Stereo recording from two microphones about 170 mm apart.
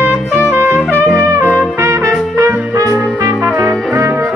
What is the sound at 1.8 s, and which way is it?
Music, 15° right (ahead or behind).